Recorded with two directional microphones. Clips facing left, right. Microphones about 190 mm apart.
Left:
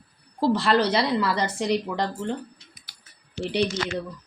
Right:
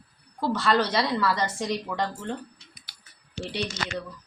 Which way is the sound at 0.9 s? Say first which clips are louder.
Left 2 dB; 20° left (ahead or behind).